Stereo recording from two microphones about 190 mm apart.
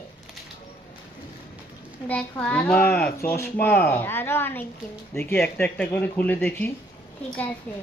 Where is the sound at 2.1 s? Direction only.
10° left (ahead or behind).